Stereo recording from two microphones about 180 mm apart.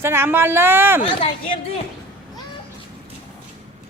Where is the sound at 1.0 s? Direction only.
30° left (ahead or behind).